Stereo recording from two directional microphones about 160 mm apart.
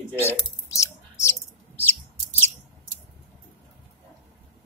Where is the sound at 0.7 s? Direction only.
20° left (ahead or behind).